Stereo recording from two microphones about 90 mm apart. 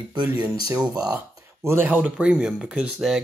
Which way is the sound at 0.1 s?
55° right (ahead or behind).